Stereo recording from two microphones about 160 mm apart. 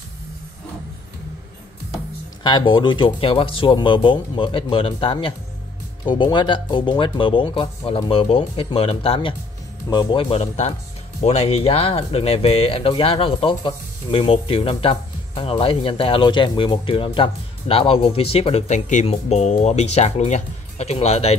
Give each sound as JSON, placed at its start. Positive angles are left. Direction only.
{"t": 2.4, "sound": "speech", "side_deg": 30}